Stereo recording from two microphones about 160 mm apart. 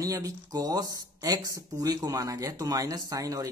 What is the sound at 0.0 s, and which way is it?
Speech, 20° right (ahead or behind).